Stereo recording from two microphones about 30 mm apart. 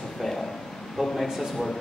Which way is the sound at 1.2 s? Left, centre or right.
Centre.